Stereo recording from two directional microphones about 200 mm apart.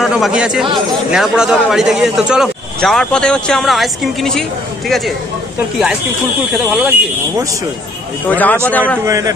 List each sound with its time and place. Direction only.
0.0 s a man's voice: 5° right (ahead or behind)
6.5 s a man's voice: centre (ahead or behind)
8.3 s a man's voice: 10° left (ahead or behind)
9.0 s a man's voice: 15° right (ahead or behind)